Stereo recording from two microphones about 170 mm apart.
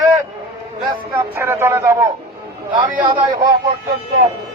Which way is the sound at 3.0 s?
30° right (ahead or behind).